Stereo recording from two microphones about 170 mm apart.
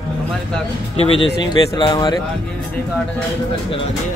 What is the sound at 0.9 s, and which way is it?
Speech, 35° left (ahead or behind).